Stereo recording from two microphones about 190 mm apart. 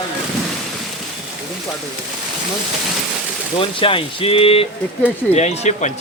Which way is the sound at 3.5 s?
30° left (ahead or behind).